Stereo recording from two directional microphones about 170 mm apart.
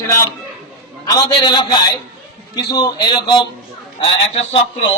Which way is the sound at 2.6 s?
25° left (ahead or behind).